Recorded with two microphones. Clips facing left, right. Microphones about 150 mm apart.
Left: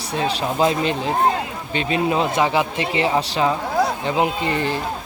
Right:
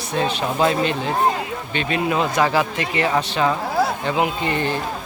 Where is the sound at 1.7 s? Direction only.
30° left (ahead or behind).